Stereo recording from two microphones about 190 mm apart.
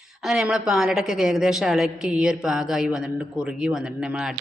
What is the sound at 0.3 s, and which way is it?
A woman's voice, 5° right (ahead or behind).